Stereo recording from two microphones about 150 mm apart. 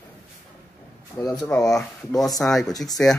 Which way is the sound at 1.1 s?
25° left (ahead or behind).